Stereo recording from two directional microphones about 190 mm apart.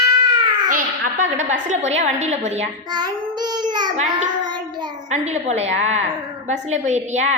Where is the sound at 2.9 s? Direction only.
20° right (ahead or behind).